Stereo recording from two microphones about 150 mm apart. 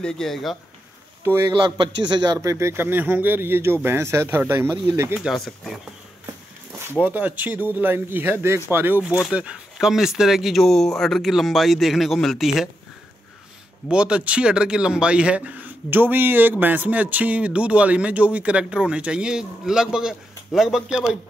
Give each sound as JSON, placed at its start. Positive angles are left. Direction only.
{"t": 0.0, "sound": "speech", "side_deg": 5}
{"t": 1.2, "sound": "speech", "side_deg": -15}
{"t": 1.5, "sound": "a man's voice", "side_deg": -30}
{"t": 5.2, "sound": "speech", "side_deg": 0}
{"t": 7.0, "sound": "a man's voice", "side_deg": -10}
{"t": 13.8, "sound": "a man's voice", "side_deg": -5}